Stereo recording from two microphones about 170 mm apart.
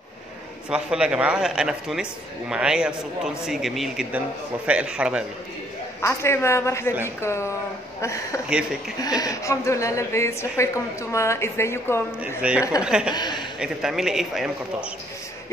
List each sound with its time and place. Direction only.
0.7 s a man's voice: 5° right (ahead or behind)
5.9 s a woman's voice: 15° left (ahead or behind)
12.2 s a man's voice: 5° right (ahead or behind)
13.1 s speech: 25° left (ahead or behind)
13.6 s a man's voice: 5° right (ahead or behind)